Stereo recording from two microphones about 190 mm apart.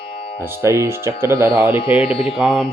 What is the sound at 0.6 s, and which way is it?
Speech, 15° right (ahead or behind).